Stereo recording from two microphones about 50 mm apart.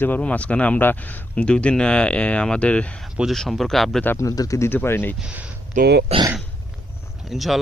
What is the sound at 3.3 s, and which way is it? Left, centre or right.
Speech, centre.